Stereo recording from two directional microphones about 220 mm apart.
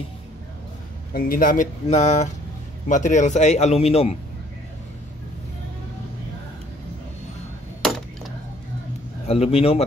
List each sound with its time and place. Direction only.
1.1 s speech: 40° left (ahead or behind)
9.3 s speech: 25° left (ahead or behind)